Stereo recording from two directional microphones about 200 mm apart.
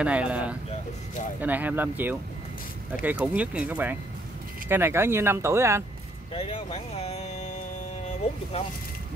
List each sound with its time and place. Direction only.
0.0 s speech: 5° right (ahead or behind)
6.3 s speech: 30° left (ahead or behind)